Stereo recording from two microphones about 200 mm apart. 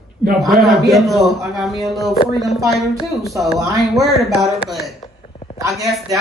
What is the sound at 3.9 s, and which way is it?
Speech, centre (ahead or behind).